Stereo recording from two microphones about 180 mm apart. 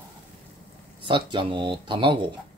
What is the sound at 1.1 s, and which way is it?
Speech, 25° right (ahead or behind).